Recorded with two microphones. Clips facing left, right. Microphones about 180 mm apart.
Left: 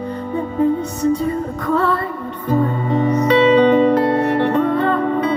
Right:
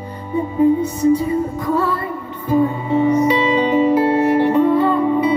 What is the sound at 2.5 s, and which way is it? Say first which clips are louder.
Music: right 2 dB; 10° right (ahead or behind).